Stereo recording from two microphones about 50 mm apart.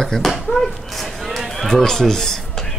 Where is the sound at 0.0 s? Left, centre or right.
Centre.